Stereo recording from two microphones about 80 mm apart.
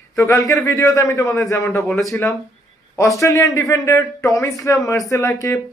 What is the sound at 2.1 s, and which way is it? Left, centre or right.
Speech, left.